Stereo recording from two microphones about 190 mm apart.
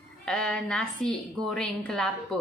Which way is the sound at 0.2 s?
5° left (ahead or behind).